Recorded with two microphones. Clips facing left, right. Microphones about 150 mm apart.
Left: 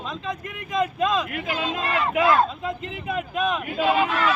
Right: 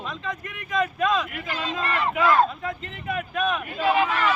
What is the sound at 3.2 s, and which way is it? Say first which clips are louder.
Speech: left 1 dB; 20° left (ahead or behind).